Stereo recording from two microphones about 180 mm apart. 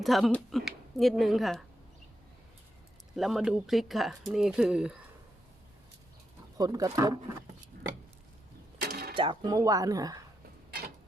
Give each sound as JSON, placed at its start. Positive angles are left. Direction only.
{"t": 0.0, "sound": "speech", "side_deg": 0}
{"t": 3.2, "sound": "speech", "side_deg": 0}
{"t": 6.6, "sound": "speech", "side_deg": -20}
{"t": 8.8, "sound": "mechanisms", "side_deg": -60}
{"t": 9.1, "sound": "speech", "side_deg": -25}